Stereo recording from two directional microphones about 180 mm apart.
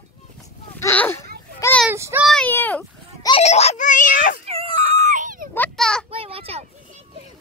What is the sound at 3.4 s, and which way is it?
Baby cry, 35° left (ahead or behind).